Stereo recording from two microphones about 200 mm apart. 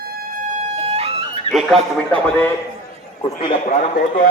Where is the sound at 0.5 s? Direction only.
35° right (ahead or behind).